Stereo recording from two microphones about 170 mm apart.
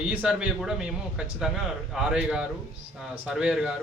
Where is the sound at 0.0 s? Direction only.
5° right (ahead or behind).